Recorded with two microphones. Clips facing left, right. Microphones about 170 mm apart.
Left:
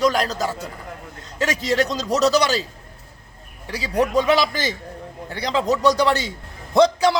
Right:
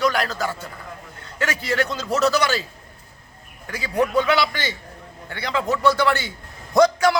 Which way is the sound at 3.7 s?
40° left (ahead or behind).